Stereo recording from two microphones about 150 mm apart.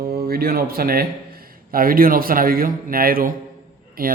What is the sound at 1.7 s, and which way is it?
A man's voice, 75° right (ahead or behind).